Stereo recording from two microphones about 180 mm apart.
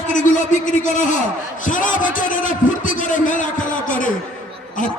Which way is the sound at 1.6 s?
45° left (ahead or behind).